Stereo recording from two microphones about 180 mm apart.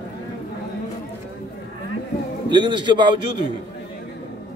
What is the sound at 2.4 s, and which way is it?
A man's voice, 25° right (ahead or behind).